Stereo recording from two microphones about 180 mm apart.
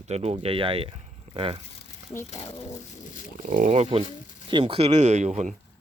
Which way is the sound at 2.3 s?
35° left (ahead or behind).